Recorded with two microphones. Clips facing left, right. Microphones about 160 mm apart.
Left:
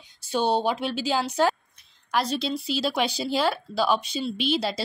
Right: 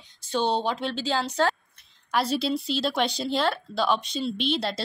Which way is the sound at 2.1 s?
Centre (ahead or behind).